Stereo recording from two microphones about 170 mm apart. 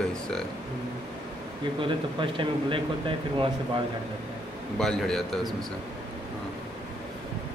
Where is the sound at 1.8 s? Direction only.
30° right (ahead or behind).